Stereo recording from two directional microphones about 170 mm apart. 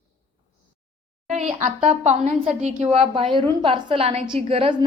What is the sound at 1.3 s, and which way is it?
A woman's voice, 45° right (ahead or behind).